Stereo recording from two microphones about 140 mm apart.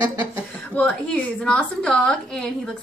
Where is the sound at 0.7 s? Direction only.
10° left (ahead or behind).